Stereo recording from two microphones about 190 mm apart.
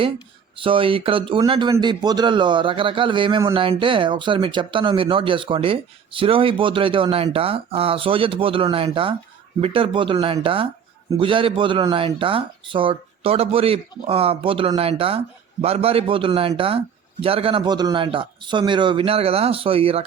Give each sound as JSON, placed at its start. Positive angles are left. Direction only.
{"t": 0.5, "sound": "a man's voice", "side_deg": -25}